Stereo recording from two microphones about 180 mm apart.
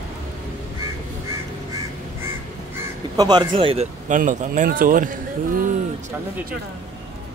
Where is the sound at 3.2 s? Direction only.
25° right (ahead or behind).